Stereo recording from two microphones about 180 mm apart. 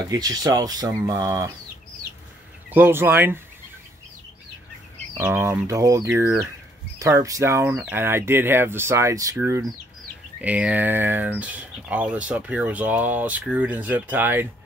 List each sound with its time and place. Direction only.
0.0 s speech: 20° right (ahead or behind)
2.7 s speech: 10° right (ahead or behind)
5.1 s speech: 15° right (ahead or behind)